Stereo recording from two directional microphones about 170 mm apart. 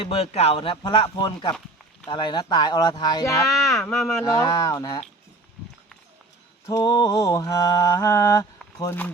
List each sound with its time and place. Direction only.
0.0 s speech: 35° left (ahead or behind)
2.0 s mantra: 25° left (ahead or behind)
3.8 s speech: centre (ahead or behind)
4.2 s mantra: 20° left (ahead or behind)
6.7 s mantra: 20° left (ahead or behind)